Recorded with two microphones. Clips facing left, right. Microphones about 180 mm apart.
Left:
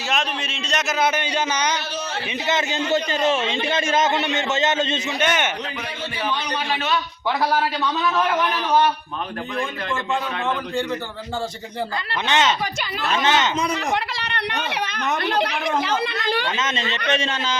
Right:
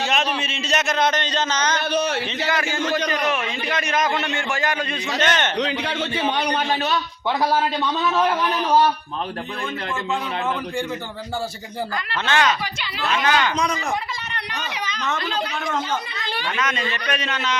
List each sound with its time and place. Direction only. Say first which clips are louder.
0.0 s speech: right 2 dB; centre (ahead or behind)
1.9 s speech: right 6 dB; 65° right (ahead or behind)
2.5 s a man's voice: left 3 dB; 20° left (ahead or behind)
5.2 s a man's voice: even; 10° left (ahead or behind)
5.5 s a man's voice: right 7 dB; 80° right
6.3 s a man's voice: right 3 dB; 60° right (ahead or behind)
12.2 s a man's voice: even; 20° left (ahead or behind)
13.7 s speech: left 2 dB; 70° left (ahead or behind)
15.8 s a woman's voice: left 4 dB; 80° left
16.1 s speech: left 7 dB; 50° left (ahead or behind)
16.5 s a man's voice: even; 25° left (ahead or behind)